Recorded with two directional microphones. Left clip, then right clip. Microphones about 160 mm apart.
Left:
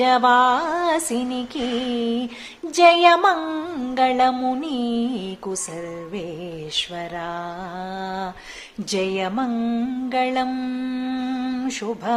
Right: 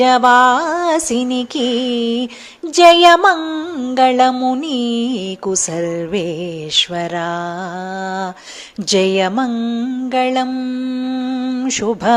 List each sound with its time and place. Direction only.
0.0 s music: 35° right (ahead or behind)
3.4 s mantra: 20° right (ahead or behind)
3.9 s music: 35° right (ahead or behind)
4.4 s mantra: 25° right (ahead or behind)
4.7 s music: 40° right (ahead or behind)
8.9 s music: 40° right (ahead or behind)
9.5 s mantra: 20° right (ahead or behind)
10.1 s music: 35° right (ahead or behind)
10.5 s mantra: 20° right (ahead or behind)
11.7 s music: 40° right (ahead or behind)